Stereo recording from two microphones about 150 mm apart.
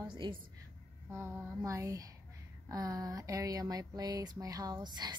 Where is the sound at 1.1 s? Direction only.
15° right (ahead or behind).